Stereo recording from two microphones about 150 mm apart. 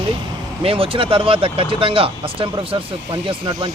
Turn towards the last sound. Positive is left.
turn(degrees=-35)  # may be behind; listen again after turning